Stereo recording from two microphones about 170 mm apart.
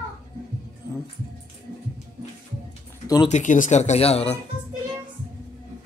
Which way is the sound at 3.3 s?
45° left (ahead or behind).